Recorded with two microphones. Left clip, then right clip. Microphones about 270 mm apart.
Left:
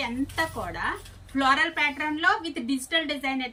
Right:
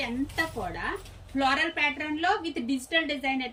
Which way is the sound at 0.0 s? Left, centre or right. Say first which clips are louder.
Left 2 dB; centre.